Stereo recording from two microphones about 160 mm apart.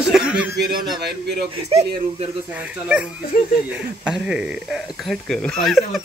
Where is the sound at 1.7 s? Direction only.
40° right (ahead or behind).